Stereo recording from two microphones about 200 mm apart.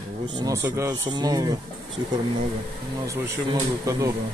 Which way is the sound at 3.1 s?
15° right (ahead or behind).